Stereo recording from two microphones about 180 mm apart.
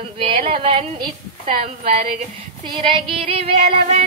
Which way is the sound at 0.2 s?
30° right (ahead or behind).